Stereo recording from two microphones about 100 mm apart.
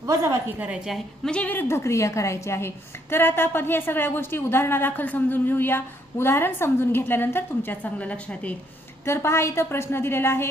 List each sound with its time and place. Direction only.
0.0 s a woman's voice: 30° right (ahead or behind)
0.6 s a woman's voice: 5° right (ahead or behind)
1.3 s a woman's voice: 15° left (ahead or behind)
9.0 s a woman's voice: 25° left (ahead or behind)